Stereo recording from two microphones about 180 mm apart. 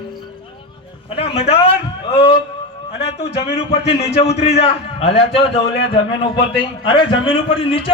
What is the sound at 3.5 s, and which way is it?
A man's voice, 35° left (ahead or behind).